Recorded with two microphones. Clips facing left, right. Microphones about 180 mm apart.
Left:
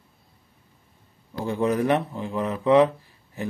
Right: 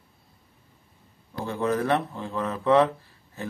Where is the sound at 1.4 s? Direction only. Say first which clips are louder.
Left 3 dB; 15° left (ahead or behind).